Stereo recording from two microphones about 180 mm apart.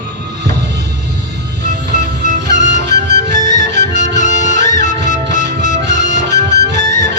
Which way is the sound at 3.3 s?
40° left (ahead or behind).